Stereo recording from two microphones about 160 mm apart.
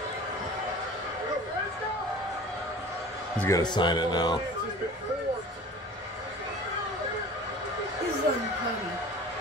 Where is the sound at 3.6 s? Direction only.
25° left (ahead or behind).